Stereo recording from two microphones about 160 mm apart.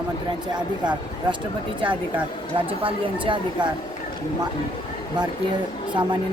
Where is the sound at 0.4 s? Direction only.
25° right (ahead or behind).